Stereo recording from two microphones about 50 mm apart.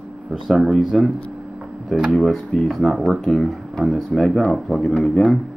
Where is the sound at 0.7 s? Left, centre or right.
Centre.